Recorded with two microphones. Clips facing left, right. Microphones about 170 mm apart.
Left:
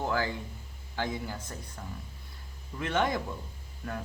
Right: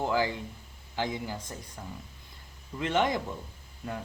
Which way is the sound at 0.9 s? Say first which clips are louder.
Right 1 dB; 15° right (ahead or behind).